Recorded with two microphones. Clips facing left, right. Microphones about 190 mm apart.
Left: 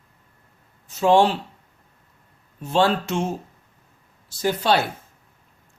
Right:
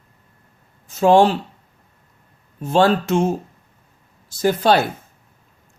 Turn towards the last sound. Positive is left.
turn(degrees=-45)  # may be behind; listen again after turning